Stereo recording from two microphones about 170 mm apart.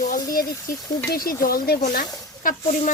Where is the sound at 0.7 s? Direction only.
55° left (ahead or behind).